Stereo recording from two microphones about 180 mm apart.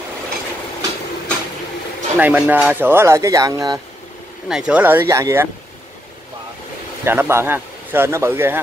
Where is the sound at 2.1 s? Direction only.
10° right (ahead or behind).